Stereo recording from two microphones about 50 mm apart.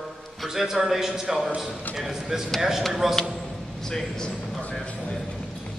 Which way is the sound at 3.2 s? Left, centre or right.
Centre.